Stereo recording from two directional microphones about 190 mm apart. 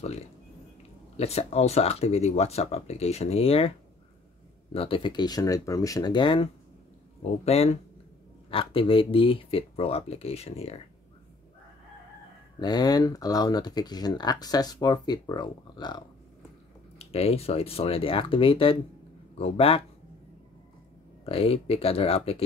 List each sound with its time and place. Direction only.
1.1 s speech: 35° left (ahead or behind)
4.7 s speech: 30° left (ahead or behind)
12.5 s speech: 20° left (ahead or behind)
17.0 s speech: 30° left (ahead or behind)
21.3 s speech: 30° left (ahead or behind)